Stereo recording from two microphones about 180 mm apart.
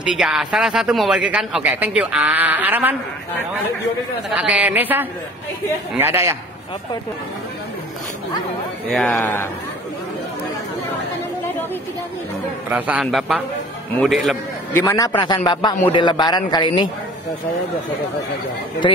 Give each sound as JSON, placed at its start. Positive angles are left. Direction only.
{"t": 0.0, "sound": "a man's voice", "side_deg": -5}
{"t": 4.4, "sound": "a man's voice", "side_deg": -5}
{"t": 9.1, "sound": "speech", "side_deg": 15}
{"t": 12.6, "sound": "a man's voice", "side_deg": -10}
{"t": 14.7, "sound": "a man's voice", "side_deg": 15}